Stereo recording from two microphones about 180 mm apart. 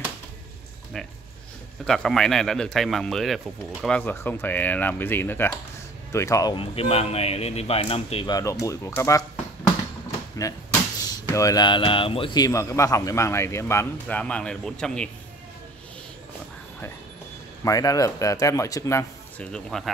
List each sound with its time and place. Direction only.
1.0 s a sound: 5° left (ahead or behind)
1.9 s a man's voice: 5° left (ahead or behind); by 8.4 s 30° left (ahead or behind)
8.4 s speech: 15° left (ahead or behind)
10.4 s speech: 20° left (ahead or behind)
17.6 s speech: 20° left (ahead or behind)
19.5 s a man's voice: centre (ahead or behind)